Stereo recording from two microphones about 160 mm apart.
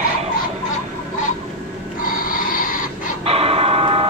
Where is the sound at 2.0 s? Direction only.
60° left (ahead or behind).